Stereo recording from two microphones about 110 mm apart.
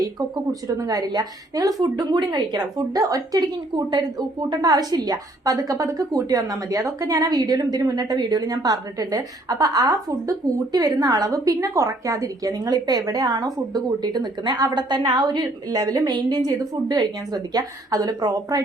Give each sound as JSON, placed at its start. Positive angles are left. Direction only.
{"t": 0.0, "sound": "speech", "side_deg": -35}